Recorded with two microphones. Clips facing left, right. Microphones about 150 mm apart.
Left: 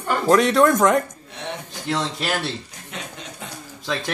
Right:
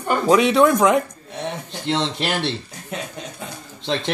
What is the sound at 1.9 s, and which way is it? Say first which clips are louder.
Speech: right 2 dB; 25° right (ahead or behind).